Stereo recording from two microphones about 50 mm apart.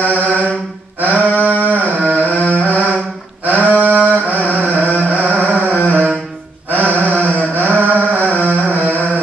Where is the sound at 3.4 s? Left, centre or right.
Right.